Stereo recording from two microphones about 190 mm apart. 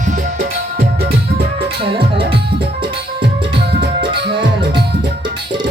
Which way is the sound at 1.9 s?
25° right (ahead or behind).